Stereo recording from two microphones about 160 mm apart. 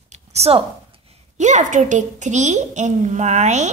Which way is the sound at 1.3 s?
50° right (ahead or behind).